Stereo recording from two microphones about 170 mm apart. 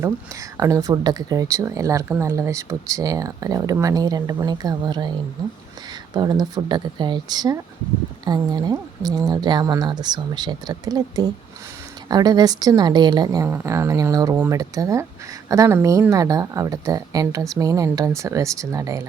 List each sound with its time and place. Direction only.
0.5 s speech: 20° right (ahead or behind)
6.1 s speech: 25° right (ahead or behind)